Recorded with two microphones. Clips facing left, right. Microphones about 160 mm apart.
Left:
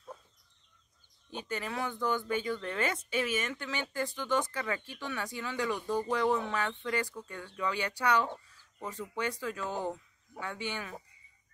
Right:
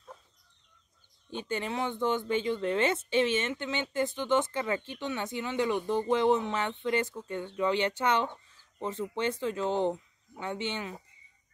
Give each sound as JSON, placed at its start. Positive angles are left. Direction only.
{"t": 1.3, "sound": "speech", "side_deg": -25}